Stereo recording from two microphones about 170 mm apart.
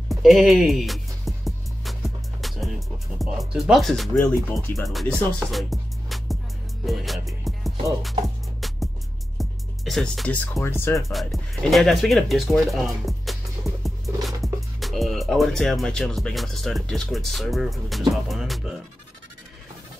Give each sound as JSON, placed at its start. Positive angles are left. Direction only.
{"t": 0.1, "sound": "music", "side_deg": 0}
{"t": 3.2, "sound": "speech", "side_deg": 0}
{"t": 4.8, "sound": "music", "side_deg": 0}
{"t": 10.5, "sound": "speech", "side_deg": 15}
{"t": 11.1, "sound": "speech", "side_deg": 0}